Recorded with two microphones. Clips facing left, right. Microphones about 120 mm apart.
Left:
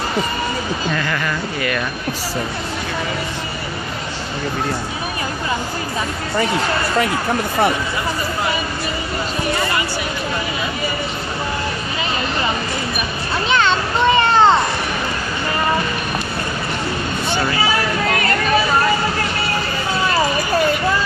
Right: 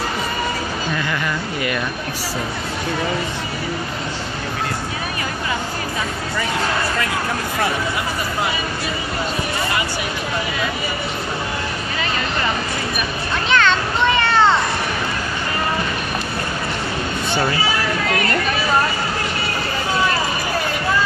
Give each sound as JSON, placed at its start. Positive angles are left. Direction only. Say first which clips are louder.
{"t": 13.5, "sound": "children playing", "louder": "even", "side_deg": 30}